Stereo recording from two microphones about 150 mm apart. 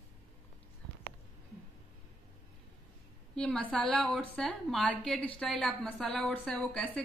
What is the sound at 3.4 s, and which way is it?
A woman's voice, 5° left (ahead or behind).